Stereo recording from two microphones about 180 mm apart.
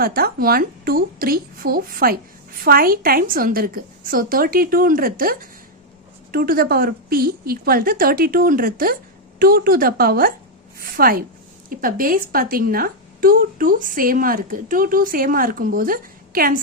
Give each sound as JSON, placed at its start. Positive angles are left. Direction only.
{"t": 0.0, "sound": "a woman's voice", "side_deg": -55}